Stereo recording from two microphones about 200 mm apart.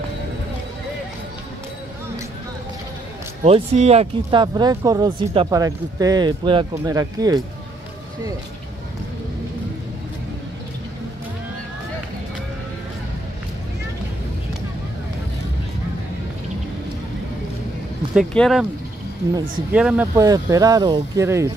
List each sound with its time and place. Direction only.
3.4 s speech: 30° right (ahead or behind)
18.1 s speech: centre (ahead or behind)
19.7 s speech: 5° right (ahead or behind)
20.2 s speech: 15° right (ahead or behind)